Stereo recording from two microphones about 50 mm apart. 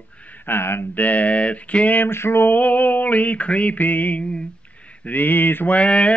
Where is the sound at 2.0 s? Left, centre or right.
Left.